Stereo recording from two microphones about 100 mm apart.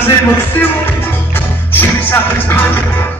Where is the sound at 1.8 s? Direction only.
20° left (ahead or behind).